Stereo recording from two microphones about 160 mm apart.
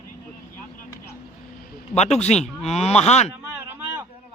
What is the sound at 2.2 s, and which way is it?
Speech, 45° left (ahead or behind).